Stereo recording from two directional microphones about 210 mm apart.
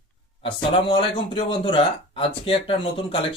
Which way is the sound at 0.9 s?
25° left (ahead or behind).